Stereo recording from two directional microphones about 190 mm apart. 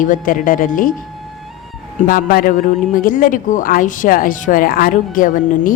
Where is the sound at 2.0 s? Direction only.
50° left (ahead or behind).